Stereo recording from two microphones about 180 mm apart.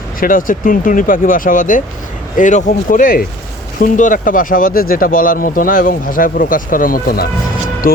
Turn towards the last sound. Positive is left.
turn(degrees=55)  # may be behind; listen again after turning